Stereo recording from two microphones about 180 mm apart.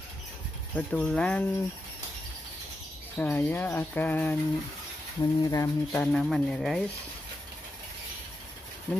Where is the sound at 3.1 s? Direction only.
10° left (ahead or behind).